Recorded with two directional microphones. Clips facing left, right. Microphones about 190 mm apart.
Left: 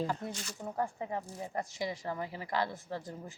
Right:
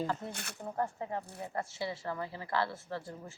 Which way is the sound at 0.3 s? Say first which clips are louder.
Left 2 dB; 60° right (ahead or behind).